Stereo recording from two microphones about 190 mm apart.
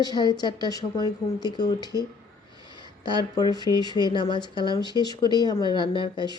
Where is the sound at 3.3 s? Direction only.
20° left (ahead or behind).